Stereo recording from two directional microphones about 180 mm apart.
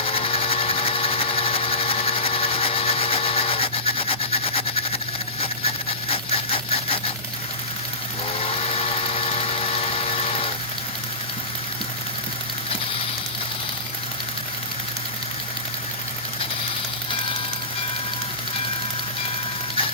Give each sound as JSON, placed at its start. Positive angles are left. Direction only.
{"t": 0.0, "sound": "sewing machine", "side_deg": 30}
{"t": 5.4, "sound": "a sound", "side_deg": 30}
{"t": 8.4, "sound": "engine", "side_deg": 30}